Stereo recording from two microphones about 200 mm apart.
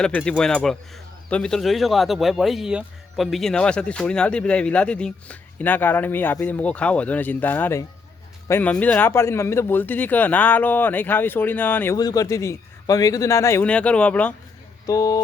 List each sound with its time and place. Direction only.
0.0 s speech: 5° left (ahead or behind)
14.8 s speech: 20° left (ahead or behind)